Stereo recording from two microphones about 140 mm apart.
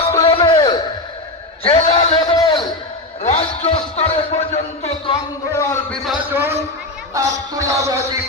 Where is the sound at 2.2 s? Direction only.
30° left (ahead or behind).